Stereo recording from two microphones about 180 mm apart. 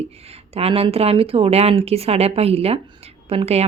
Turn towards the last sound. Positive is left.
turn(degrees=-35)  # may be behind; listen again after turning